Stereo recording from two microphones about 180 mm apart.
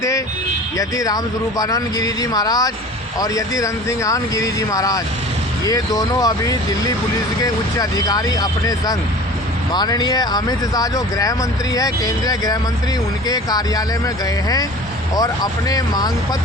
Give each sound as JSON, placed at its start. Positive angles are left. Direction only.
{"t": 0.8, "sound": "speech", "side_deg": 20}
{"t": 15.7, "sound": "speech", "side_deg": 20}